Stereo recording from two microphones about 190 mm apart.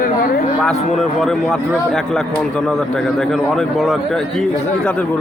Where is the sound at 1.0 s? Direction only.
Centre (ahead or behind).